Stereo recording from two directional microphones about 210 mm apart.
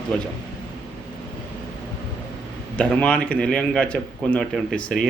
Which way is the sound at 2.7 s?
5° left (ahead or behind).